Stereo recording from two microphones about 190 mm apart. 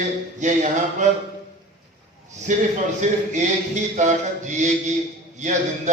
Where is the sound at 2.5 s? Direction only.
40° right (ahead or behind).